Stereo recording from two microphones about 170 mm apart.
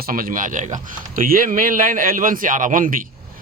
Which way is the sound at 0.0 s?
55° right (ahead or behind).